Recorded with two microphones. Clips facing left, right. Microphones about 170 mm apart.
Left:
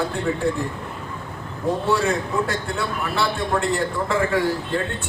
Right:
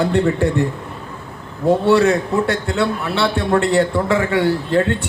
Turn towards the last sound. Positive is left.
turn(degrees=-75)  # may be behind; listen again after turning